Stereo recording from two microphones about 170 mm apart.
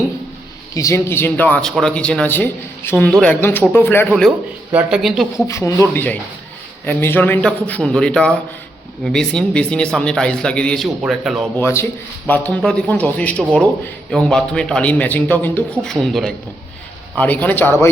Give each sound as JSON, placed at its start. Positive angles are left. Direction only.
{"t": 0.7, "sound": "speech", "side_deg": 20}
{"t": 4.7, "sound": "a man's voice", "side_deg": -5}
{"t": 5.5, "sound": "a man's voice", "side_deg": 20}
{"t": 11.5, "sound": "a man's voice", "side_deg": 15}